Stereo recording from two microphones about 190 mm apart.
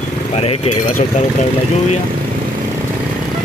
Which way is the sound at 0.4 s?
35° left (ahead or behind).